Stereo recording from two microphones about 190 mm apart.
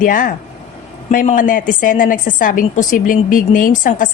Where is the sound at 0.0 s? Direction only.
45° left (ahead or behind).